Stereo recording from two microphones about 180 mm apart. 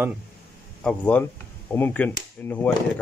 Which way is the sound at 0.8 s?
10° left (ahead or behind).